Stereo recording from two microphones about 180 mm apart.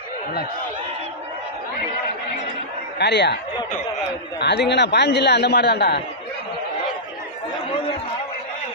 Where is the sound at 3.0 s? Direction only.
75° left (ahead or behind).